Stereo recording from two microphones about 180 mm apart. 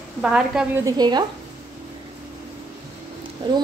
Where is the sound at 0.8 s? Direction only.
25° right (ahead or behind).